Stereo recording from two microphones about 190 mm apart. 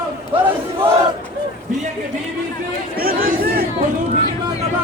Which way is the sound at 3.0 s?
50° right (ahead or behind).